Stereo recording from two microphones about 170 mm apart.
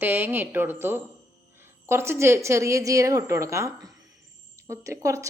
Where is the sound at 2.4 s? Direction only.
15° right (ahead or behind).